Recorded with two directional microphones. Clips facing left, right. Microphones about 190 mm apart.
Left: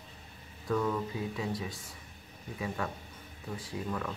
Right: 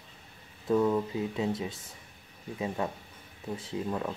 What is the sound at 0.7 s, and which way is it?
Speech, 25° right (ahead or behind).